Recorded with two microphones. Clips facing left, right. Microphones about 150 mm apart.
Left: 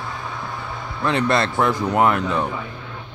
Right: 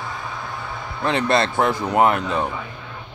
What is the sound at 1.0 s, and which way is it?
A man's voice, 25° right (ahead or behind).